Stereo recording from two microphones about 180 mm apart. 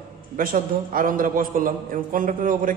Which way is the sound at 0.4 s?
50° right (ahead or behind).